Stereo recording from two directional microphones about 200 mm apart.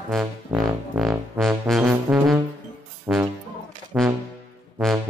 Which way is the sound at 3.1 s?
10° right (ahead or behind).